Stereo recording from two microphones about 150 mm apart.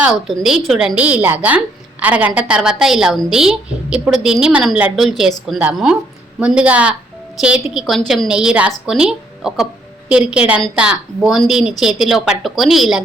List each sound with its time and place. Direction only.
0.0 s a woman's voice: 5° right (ahead or behind)